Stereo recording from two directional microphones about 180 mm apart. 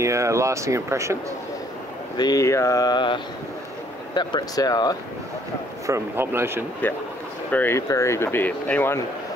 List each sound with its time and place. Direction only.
0.0 s speech: 15° right (ahead or behind)
2.1 s a sound: 20° left (ahead or behind)
5.9 s speech: 15° right (ahead or behind)
6.8 s speech: 10° left (ahead or behind)